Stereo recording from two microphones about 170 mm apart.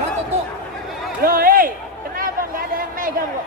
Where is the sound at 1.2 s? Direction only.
55° right (ahead or behind).